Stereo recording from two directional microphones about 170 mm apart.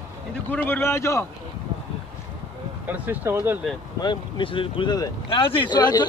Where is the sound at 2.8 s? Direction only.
10° right (ahead or behind).